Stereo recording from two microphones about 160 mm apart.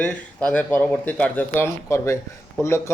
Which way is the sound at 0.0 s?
10° left (ahead or behind).